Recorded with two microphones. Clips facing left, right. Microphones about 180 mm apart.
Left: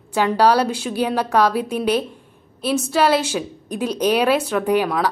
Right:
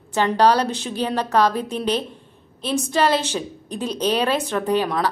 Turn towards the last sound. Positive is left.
turn(degrees=5)  # may be behind; listen again after turning